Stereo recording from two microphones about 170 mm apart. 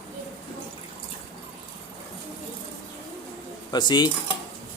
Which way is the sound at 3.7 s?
25° left (ahead or behind).